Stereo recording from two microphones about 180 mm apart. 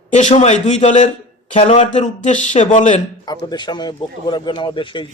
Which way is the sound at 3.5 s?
25° left (ahead or behind).